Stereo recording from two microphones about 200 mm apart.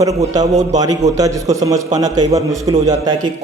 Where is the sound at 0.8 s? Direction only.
20° right (ahead or behind).